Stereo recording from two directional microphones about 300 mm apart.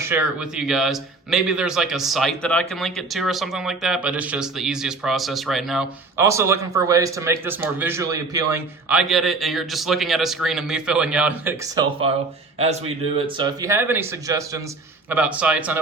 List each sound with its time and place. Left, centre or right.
0.0 s a man's voice: centre